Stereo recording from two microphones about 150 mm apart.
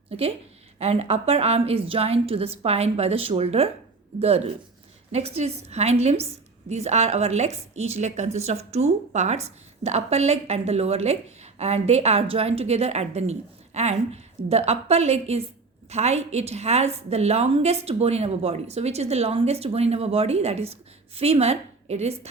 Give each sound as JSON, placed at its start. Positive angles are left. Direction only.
{"t": 0.1, "sound": "a woman's voice", "side_deg": -40}